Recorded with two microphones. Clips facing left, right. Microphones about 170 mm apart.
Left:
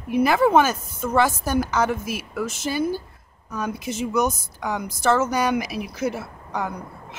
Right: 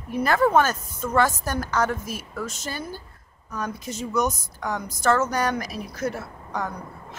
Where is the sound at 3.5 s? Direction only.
10° left (ahead or behind).